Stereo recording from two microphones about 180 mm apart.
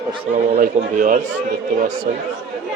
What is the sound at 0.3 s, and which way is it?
A man's voice, 40° right (ahead or behind).